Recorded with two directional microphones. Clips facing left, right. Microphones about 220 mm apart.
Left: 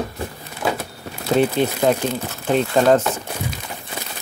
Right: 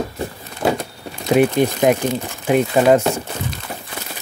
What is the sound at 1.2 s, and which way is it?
Speech, 15° right (ahead or behind).